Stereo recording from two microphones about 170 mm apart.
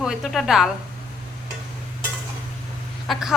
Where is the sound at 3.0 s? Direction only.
Centre (ahead or behind).